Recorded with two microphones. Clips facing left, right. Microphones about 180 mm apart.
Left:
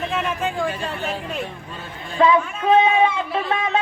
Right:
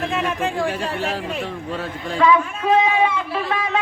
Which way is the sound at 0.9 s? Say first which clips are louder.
Right 2 dB; 90° right.